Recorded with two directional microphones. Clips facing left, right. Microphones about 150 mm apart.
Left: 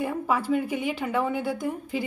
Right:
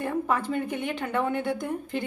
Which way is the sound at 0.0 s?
5° left (ahead or behind).